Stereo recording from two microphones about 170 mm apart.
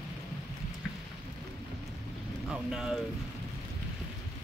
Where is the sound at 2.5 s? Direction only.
5° right (ahead or behind).